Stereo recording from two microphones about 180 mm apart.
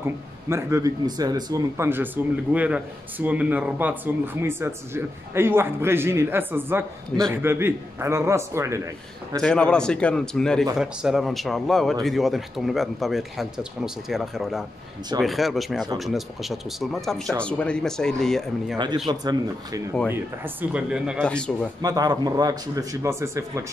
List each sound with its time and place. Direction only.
0.0 s a man's voice: 15° right (ahead or behind)
7.1 s a man's voice: 5° left (ahead or behind)
7.4 s a man's voice: 15° right (ahead or behind)
9.4 s a man's voice: 5° left (ahead or behind)
19.0 s speech: 25° right (ahead or behind)
20.1 s a man's voice: 10° right (ahead or behind)
21.8 s speech: 20° right (ahead or behind)